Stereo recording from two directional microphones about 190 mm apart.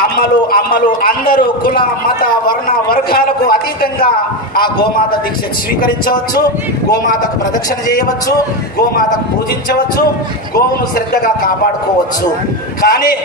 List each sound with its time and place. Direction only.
0.0 s a man's voice: 50° left (ahead or behind)
5.8 s a man's voice: 50° left (ahead or behind)
11.1 s a man's voice: 50° left (ahead or behind)
12.8 s a man's voice: 50° left (ahead or behind)